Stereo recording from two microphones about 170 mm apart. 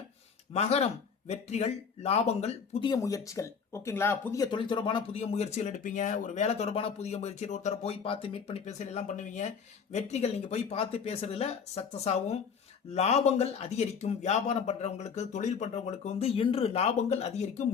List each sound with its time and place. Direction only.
0.5 s speech: 40° left (ahead or behind)
2.9 s speech: 20° left (ahead or behind)
4.5 s speech: 30° left (ahead or behind)